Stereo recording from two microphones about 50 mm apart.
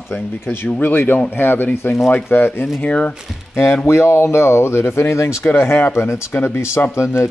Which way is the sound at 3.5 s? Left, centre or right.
Left.